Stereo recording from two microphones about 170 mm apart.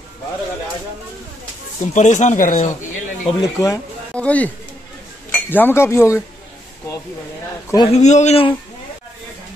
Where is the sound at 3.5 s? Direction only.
20° left (ahead or behind).